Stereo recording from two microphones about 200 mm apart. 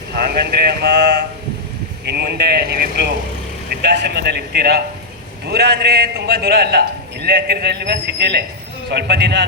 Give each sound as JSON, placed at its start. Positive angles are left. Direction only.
{"t": 0.1, "sound": "speech", "side_deg": -50}
{"t": 2.0, "sound": "a man's voice", "side_deg": -55}